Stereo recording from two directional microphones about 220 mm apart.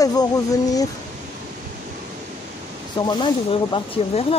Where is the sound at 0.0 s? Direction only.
15° left (ahead or behind).